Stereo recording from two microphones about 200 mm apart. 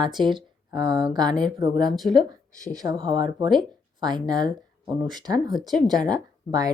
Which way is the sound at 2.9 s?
20° right (ahead or behind).